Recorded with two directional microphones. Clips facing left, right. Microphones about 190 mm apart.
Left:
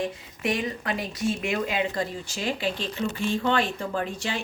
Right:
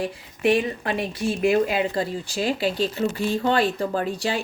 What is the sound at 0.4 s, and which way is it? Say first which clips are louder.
Speech: right 6 dB; 30° right (ahead or behind).